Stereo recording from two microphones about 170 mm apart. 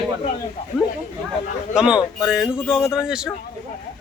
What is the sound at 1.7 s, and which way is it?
Speech, 5° right (ahead or behind).